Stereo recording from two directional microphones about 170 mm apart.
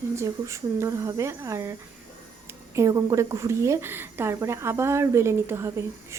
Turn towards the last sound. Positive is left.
turn(degrees=-15)  # may be behind; listen again after turning